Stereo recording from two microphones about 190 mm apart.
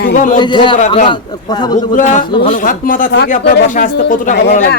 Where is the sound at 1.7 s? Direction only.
40° left (ahead or behind).